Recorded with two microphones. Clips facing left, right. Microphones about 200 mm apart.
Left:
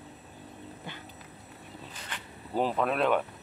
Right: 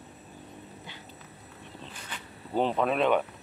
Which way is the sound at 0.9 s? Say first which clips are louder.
Left 4 dB; 55° left (ahead or behind).